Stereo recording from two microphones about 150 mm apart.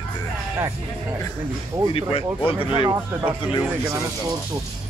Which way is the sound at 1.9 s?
40° left (ahead or behind).